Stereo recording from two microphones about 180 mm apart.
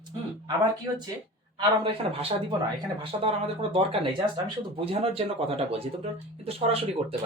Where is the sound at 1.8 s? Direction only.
30° right (ahead or behind).